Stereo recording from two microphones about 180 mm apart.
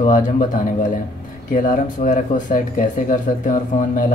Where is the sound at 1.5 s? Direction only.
45° left (ahead or behind).